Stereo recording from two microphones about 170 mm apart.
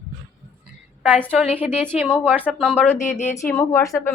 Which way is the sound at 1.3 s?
Centre (ahead or behind).